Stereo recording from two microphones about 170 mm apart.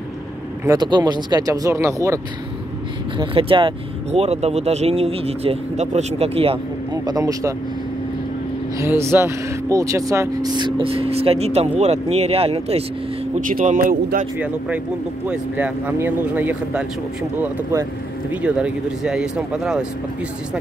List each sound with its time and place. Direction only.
0.7 s speech: 25° right (ahead or behind)
3.2 s speech: 30° right (ahead or behind)
8.7 s speech: 15° right (ahead or behind); by 12.8 s 35° right (ahead or behind)
13.4 s a man's voice: 55° right (ahead or behind)
15.2 s speech: 10° right (ahead or behind)
18.3 s speech: 5° right (ahead or behind)